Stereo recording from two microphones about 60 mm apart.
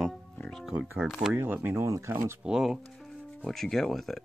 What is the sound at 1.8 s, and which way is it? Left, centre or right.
Speech, right.